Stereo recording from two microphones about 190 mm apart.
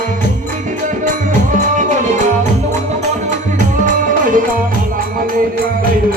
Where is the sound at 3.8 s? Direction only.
45° right (ahead or behind).